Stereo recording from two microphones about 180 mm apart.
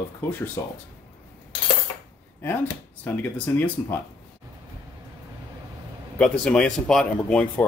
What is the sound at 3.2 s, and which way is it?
Speech, 10° left (ahead or behind).